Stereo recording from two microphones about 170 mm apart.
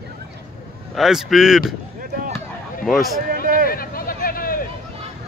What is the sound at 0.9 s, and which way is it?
Speech, centre (ahead or behind).